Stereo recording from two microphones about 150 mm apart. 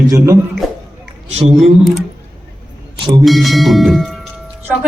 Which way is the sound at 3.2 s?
Centre (ahead or behind).